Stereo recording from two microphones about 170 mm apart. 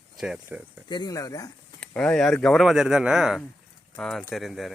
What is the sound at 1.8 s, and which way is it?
Speech, 5° left (ahead or behind).